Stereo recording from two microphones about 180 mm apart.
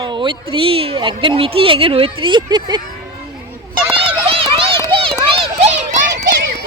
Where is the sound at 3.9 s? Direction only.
30° right (ahead or behind).